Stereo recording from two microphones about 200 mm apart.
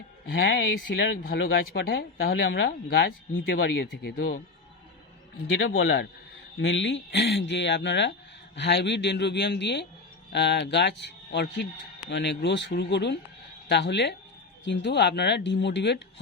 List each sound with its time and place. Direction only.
0.3 s speech: 55° left (ahead or behind)
5.5 s speech: 75° left (ahead or behind)
6.6 s speech: 65° left (ahead or behind)